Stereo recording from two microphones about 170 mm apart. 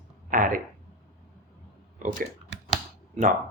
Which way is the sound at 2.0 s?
50° right (ahead or behind).